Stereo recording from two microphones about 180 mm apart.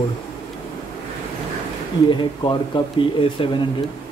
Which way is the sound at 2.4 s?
25° left (ahead or behind).